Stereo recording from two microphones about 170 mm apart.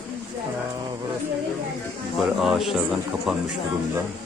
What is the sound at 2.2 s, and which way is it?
Speech, centre (ahead or behind).